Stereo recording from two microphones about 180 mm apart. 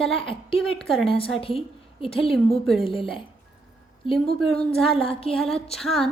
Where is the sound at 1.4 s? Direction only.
30° left (ahead or behind).